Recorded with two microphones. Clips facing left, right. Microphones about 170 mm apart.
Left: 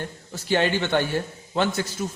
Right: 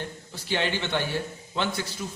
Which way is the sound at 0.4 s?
45° left (ahead or behind).